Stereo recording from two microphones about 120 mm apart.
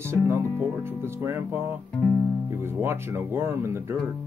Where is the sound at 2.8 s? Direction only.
20° right (ahead or behind).